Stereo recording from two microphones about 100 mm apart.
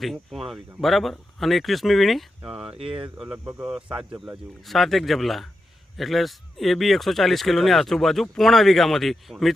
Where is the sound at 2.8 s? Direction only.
60° right (ahead or behind).